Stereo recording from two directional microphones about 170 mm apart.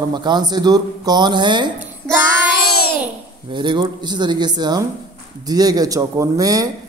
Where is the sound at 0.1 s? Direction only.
25° right (ahead or behind).